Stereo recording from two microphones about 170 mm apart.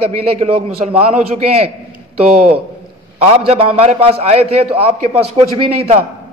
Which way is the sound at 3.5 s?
35° right (ahead or behind).